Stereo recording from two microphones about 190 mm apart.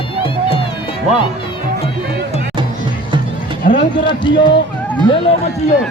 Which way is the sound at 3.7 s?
45° left (ahead or behind).